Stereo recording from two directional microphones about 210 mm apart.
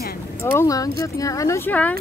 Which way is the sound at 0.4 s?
10° left (ahead or behind).